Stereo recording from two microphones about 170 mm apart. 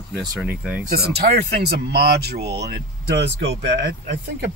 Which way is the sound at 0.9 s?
65° right (ahead or behind).